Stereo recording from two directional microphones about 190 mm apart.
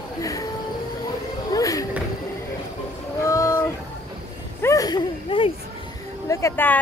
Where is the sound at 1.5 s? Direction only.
20° left (ahead or behind).